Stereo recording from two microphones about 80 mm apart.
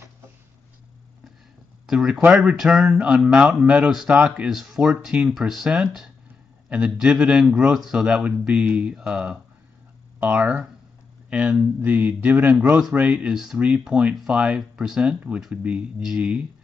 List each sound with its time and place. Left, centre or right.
1.9 s a man's voice: centre
2.6 s a sound: centre
3.0 s a man's voice: centre
4.5 s a man's voice: centre
13.3 s a sound: centre
13.6 s a man's voice: centre